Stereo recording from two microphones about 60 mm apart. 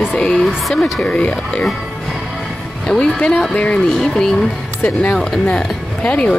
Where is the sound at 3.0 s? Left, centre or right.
Left.